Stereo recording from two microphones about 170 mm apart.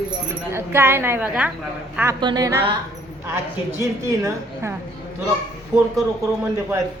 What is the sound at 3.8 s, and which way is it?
Speech, 20° right (ahead or behind).